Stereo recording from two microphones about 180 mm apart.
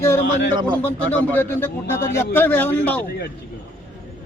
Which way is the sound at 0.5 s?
25° right (ahead or behind).